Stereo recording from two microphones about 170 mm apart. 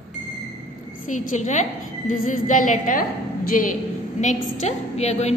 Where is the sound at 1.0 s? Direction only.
50° left (ahead or behind).